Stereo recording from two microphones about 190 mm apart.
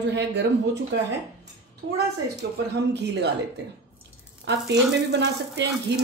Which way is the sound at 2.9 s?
65° right (ahead or behind).